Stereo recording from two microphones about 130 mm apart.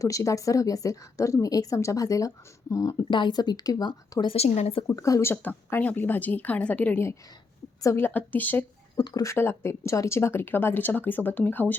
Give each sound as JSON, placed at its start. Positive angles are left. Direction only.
{"t": 0.0, "sound": "a woman's voice", "side_deg": 25}
{"t": 4.4, "sound": "speech", "side_deg": 60}
{"t": 4.9, "sound": "a woman's voice", "side_deg": 25}
{"t": 9.0, "sound": "a woman's voice", "side_deg": 30}